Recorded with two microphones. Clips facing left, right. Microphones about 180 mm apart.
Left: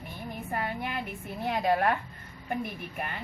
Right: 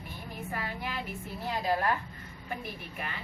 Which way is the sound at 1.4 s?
60° left (ahead or behind).